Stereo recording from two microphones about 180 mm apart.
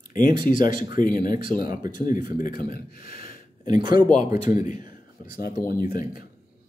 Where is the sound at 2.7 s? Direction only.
55° left (ahead or behind).